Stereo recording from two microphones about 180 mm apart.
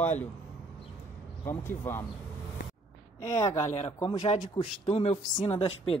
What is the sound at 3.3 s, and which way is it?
Speech, 15° left (ahead or behind).